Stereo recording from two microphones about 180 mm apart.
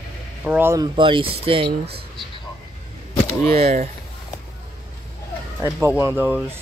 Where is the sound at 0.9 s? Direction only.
30° right (ahead or behind).